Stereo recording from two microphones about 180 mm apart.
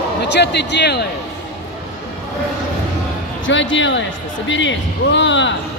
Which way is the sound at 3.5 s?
90° left.